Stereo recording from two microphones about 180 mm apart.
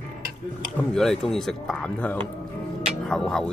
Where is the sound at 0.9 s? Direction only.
5° left (ahead or behind).